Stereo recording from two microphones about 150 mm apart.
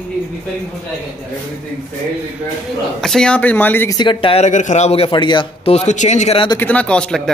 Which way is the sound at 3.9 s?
30° left (ahead or behind).